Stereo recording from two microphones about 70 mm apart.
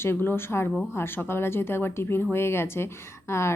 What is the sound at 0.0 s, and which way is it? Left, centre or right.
Speech, left.